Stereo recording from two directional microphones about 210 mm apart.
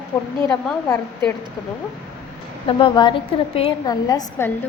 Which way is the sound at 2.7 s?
25° left (ahead or behind).